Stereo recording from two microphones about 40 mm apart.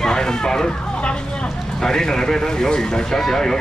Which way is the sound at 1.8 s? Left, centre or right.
Centre.